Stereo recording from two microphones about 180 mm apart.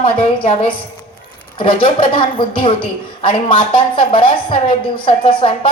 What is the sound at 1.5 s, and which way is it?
Speech, 30° left (ahead or behind).